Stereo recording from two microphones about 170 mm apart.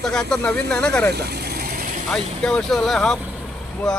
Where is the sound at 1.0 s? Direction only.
70° right (ahead or behind).